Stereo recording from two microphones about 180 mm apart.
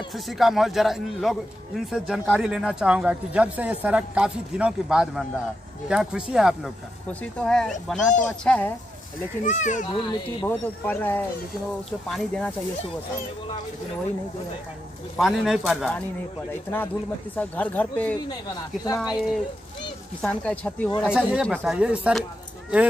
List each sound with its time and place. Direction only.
0.1 s speech: centre (ahead or behind)
9.4 s a child's voice: 45° left (ahead or behind)
9.8 s speech: 25° left (ahead or behind)
10.5 s speech: 10° left (ahead or behind)
15.1 s speech: centre (ahead or behind)
17.4 s speech: 10° left (ahead or behind)